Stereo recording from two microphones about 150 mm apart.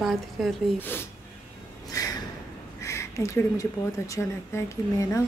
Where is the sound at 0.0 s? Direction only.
Centre (ahead or behind).